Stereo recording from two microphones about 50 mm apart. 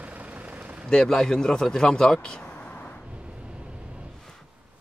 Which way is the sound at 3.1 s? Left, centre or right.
Right.